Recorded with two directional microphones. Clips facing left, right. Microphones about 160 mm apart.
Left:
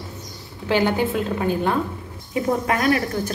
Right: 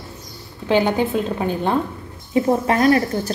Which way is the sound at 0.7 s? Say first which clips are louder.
Right 2 dB; 20° right (ahead or behind).